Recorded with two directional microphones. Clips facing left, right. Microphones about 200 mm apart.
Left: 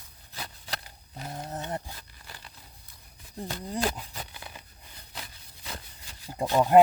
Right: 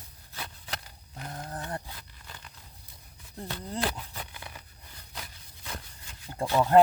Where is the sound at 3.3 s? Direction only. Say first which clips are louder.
Left 2 dB; 15° left (ahead or behind).